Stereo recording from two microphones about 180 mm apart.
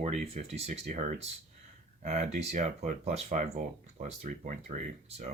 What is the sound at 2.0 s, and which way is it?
Speech, 40° right (ahead or behind).